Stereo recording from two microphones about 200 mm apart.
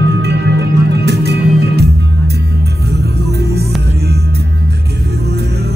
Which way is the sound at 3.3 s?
55° right (ahead or behind).